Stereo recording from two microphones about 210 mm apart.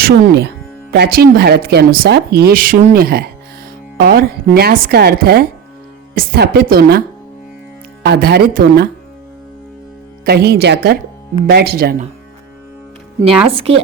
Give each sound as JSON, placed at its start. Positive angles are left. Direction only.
{"t": 0.0, "sound": "speech", "side_deg": -50}
{"t": 8.0, "sound": "speech", "side_deg": -50}
{"t": 10.2, "sound": "speech", "side_deg": -50}
{"t": 13.4, "sound": "a woman's voice", "side_deg": -25}